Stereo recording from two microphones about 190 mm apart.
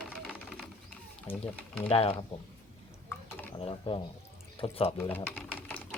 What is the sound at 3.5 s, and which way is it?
Speech, 25° left (ahead or behind).